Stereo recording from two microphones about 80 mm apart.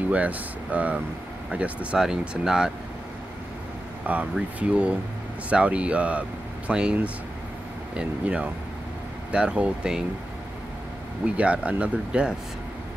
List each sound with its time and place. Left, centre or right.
0.1 s speech: centre
4.0 s speech: centre
11.2 s speech: centre